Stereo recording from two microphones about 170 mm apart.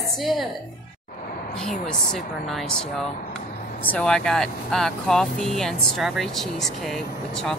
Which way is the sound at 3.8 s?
5° left (ahead or behind).